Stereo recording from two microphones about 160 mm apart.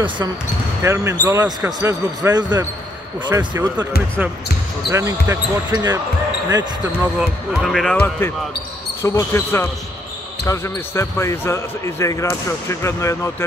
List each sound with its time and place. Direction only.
0.8 s speech: 15° right (ahead or behind)
7.0 s speech: 15° right (ahead or behind)
7.6 s speech: centre (ahead or behind); by 13.5 s 15° left (ahead or behind)